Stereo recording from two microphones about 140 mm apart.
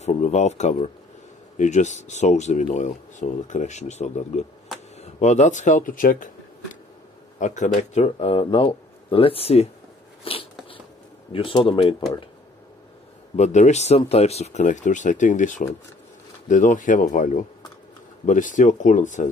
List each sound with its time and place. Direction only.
0.0 s speech: 55° left (ahead or behind); by 6.3 s 75° left (ahead or behind)
7.3 s speech: 60° left (ahead or behind)
10.2 s biting: 40° left (ahead or behind)
11.3 s speech: 40° left (ahead or behind)
13.4 s speech: 55° left (ahead or behind)